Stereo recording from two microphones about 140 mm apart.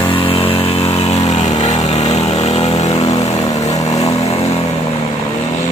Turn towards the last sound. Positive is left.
turn(degrees=50)  # may be behind; listen again after turning